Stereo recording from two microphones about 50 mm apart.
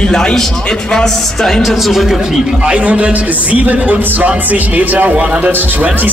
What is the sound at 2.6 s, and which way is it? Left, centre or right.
Speech, right.